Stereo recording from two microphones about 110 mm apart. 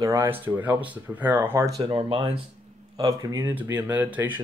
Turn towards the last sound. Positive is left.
turn(degrees=-15)  # may be behind; listen again after turning